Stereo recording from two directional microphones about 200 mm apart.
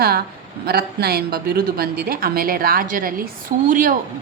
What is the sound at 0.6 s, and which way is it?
A woman's voice, 50° right (ahead or behind).